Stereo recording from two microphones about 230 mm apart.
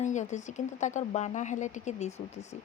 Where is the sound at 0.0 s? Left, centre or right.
Left.